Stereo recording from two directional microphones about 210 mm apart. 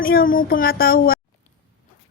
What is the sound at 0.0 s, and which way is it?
Speech, 45° left (ahead or behind).